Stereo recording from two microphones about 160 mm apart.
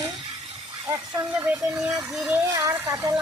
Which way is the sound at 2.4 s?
20° right (ahead or behind).